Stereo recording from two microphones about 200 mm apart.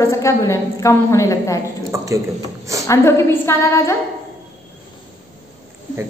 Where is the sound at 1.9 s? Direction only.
15° right (ahead or behind).